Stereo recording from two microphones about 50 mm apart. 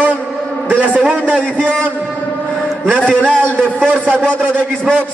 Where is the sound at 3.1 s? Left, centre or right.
Centre.